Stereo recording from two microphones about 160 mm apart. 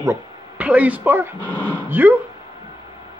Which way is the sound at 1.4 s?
10° left (ahead or behind).